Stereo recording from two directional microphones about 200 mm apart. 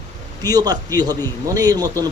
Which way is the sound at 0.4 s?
20° right (ahead or behind).